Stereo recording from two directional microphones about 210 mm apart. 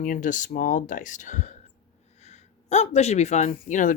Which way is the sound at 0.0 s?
40° left (ahead or behind).